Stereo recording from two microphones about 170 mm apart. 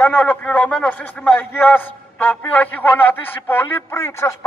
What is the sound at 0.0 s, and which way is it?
A man's voice, 10° left (ahead or behind).